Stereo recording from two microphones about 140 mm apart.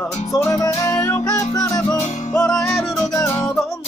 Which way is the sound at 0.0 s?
20° left (ahead or behind).